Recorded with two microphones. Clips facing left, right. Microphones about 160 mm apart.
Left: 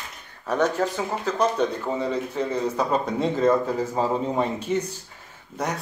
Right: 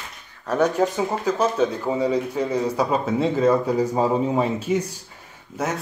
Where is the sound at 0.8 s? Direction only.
20° right (ahead or behind).